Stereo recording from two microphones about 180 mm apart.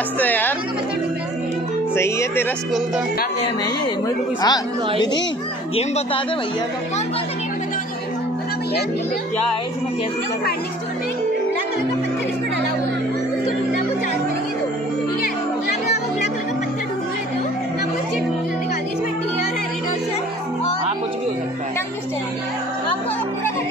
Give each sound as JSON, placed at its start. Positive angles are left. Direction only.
{"t": 0.2, "sound": "music", "side_deg": 10}
{"t": 2.0, "sound": "speech", "side_deg": 15}
{"t": 4.4, "sound": "a woman's voice", "side_deg": 25}
{"t": 5.8, "sound": "speech", "side_deg": 35}